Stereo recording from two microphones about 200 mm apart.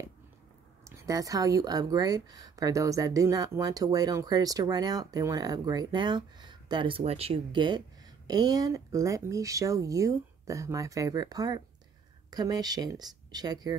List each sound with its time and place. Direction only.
0.8 s speech: 15° right (ahead or behind)